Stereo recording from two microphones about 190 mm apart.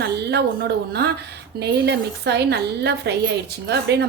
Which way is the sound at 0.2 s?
60° right (ahead or behind).